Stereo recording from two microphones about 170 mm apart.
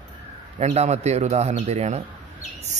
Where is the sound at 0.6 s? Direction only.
40° right (ahead or behind).